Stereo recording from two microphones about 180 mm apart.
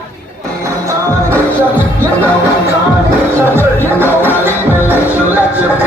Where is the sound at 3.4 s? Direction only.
10° right (ahead or behind).